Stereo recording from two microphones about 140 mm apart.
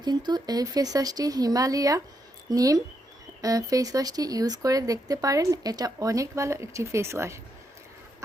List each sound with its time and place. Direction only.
0.0 s speech: 30° right (ahead or behind)